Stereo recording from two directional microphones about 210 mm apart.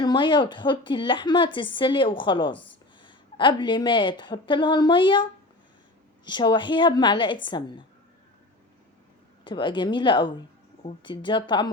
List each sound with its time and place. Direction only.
0.0 s speech: 20° left (ahead or behind)
6.2 s speech: 20° left (ahead or behind)
9.4 s speech: 20° left (ahead or behind)